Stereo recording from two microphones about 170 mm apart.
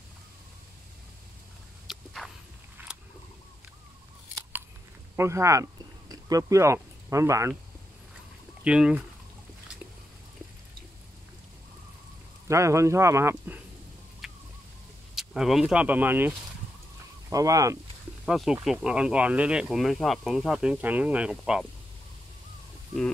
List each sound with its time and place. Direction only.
1.9 s walk: centre (ahead or behind)
2.9 s a sound: 5° right (ahead or behind)
5.1 s speech: 15° right (ahead or behind)
8.6 s speech: 5° right (ahead or behind)
12.4 s speech: 15° right (ahead or behind)
14.2 s a sound: centre (ahead or behind)
15.1 s speech: centre (ahead or behind); by 17.7 s 20° right (ahead or behind)
18.2 s speech: centre (ahead or behind)